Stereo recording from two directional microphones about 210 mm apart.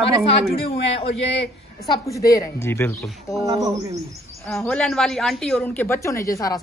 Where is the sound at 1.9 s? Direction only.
15° left (ahead or behind).